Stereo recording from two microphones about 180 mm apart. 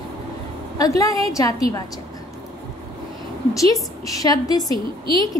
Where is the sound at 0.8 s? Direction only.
20° left (ahead or behind).